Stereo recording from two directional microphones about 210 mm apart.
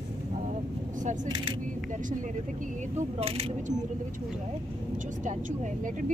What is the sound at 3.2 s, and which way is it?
Speech, 30° right (ahead or behind).